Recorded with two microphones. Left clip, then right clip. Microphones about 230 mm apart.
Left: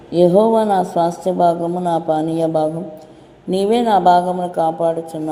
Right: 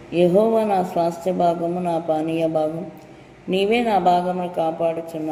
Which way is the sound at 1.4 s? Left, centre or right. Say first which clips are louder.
Left 5 dB; left.